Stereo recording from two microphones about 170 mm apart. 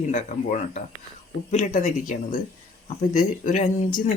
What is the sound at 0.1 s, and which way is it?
Speech, 50° left (ahead or behind).